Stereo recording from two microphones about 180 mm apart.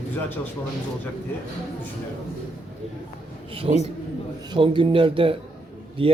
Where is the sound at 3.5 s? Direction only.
30° right (ahead or behind).